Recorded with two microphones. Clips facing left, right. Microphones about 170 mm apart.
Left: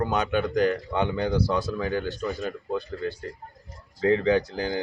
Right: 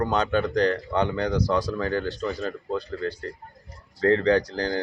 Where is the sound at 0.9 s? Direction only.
15° left (ahead or behind).